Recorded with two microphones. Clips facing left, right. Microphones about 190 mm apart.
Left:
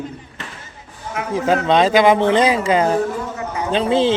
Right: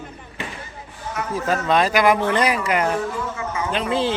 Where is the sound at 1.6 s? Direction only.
25° left (ahead or behind).